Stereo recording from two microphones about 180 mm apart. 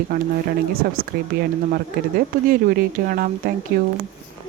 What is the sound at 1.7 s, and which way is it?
Speech, 55° right (ahead or behind).